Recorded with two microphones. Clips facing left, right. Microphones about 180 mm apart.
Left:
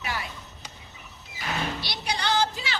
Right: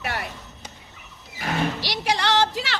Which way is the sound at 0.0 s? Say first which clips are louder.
Right 3 dB; 65° right (ahead or behind).